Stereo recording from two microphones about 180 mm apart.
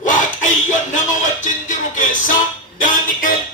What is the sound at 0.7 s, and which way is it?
Music, 45° left (ahead or behind).